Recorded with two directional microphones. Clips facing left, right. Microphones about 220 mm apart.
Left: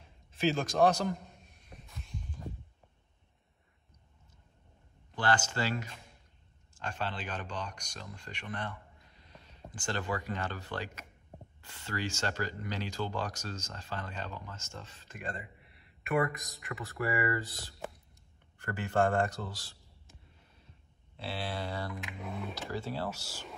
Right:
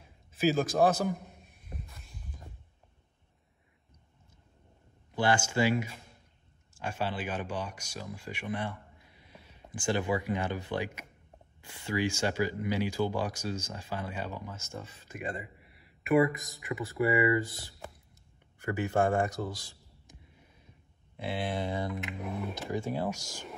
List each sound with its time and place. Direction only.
0.3 s a sound: 5° right (ahead or behind)
5.1 s speech: 10° right (ahead or behind)
17.2 s speech: 15° right (ahead or behind)
18.6 s a sound: 10° right (ahead or behind)
21.2 s speech: 20° right (ahead or behind)
22.2 s speech: centre (ahead or behind)
22.5 s speech: 20° right (ahead or behind)